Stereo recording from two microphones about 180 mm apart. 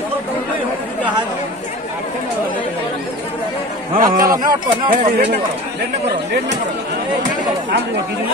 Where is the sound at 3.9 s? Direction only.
50° right (ahead or behind).